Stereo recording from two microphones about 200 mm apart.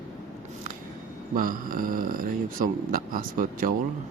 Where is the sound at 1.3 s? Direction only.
45° right (ahead or behind).